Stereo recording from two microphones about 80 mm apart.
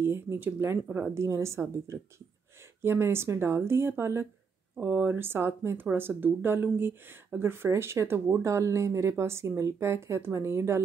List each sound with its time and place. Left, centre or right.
0.0 s speech: right